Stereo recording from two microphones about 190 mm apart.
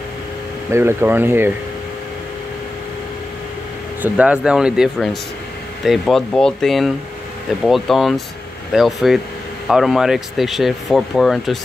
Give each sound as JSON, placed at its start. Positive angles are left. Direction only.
{"t": 0.7, "sound": "speech", "side_deg": -15}
{"t": 4.0, "sound": "speech", "side_deg": -5}